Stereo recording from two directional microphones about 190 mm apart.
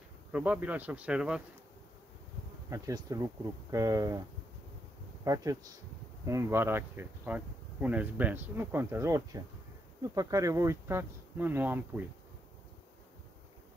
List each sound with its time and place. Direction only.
0.3 s speech: 10° right (ahead or behind)
2.7 s speech: 20° right (ahead or behind)
5.2 s speech: 20° right (ahead or behind)